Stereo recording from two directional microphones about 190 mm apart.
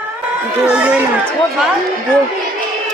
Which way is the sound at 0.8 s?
5° right (ahead or behind).